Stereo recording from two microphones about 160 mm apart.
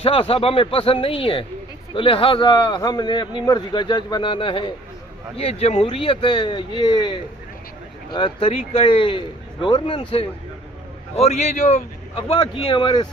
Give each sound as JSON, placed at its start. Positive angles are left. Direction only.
{"t": 0.0, "sound": "a man's voice", "side_deg": 35}
{"t": 12.1, "sound": "a man's voice", "side_deg": 30}